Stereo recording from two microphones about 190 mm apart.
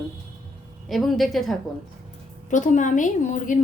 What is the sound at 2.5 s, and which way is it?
A woman's voice, 40° left (ahead or behind).